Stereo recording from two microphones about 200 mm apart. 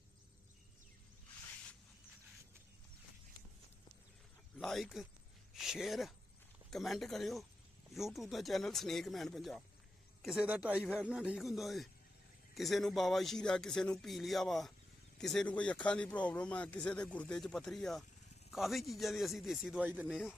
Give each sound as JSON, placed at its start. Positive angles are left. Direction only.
{"t": 4.5, "sound": "a man's voice", "side_deg": 0}